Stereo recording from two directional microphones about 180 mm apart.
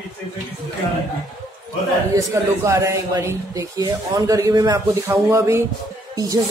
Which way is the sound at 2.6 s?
15° right (ahead or behind).